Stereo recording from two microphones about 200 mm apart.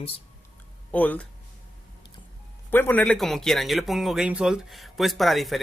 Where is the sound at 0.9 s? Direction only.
10° left (ahead or behind).